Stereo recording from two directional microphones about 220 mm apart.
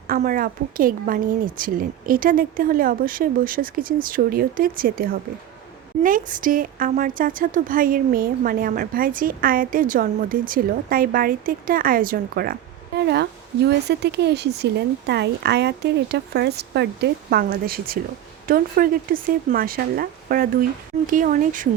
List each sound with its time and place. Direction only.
0.1 s a woman's voice: 40° right (ahead or behind)